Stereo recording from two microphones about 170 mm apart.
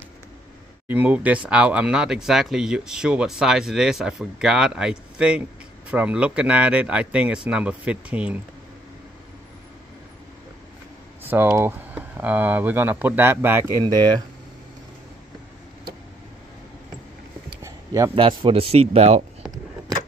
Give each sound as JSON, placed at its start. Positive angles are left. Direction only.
{"t": 0.8, "sound": "speech", "side_deg": -10}
{"t": 11.2, "sound": "speech", "side_deg": -15}
{"t": 17.6, "sound": "a sound", "side_deg": -20}
{"t": 18.2, "sound": "speech", "side_deg": -30}